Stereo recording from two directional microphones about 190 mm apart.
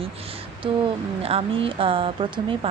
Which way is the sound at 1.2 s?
30° right (ahead or behind).